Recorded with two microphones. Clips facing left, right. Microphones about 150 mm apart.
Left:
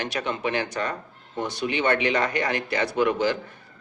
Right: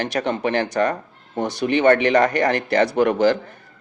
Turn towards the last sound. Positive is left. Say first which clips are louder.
# right 6 dB
turn(degrees=-45)  # may be behind; listen again after turning